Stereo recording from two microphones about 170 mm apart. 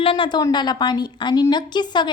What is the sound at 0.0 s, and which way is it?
A woman's voice, 30° left (ahead or behind).